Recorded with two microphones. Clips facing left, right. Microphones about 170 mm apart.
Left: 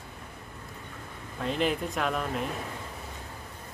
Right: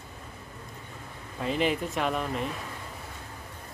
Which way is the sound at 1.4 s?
Centre (ahead or behind).